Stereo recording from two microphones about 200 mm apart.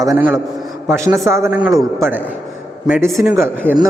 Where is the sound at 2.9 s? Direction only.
10° right (ahead or behind).